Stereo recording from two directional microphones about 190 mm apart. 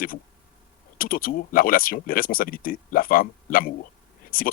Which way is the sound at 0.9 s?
50° left (ahead or behind).